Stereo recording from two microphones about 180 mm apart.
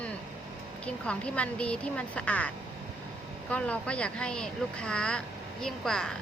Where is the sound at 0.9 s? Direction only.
5° left (ahead or behind).